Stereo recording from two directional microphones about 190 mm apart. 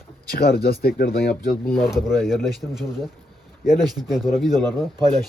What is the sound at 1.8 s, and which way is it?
A man's voice, centre (ahead or behind).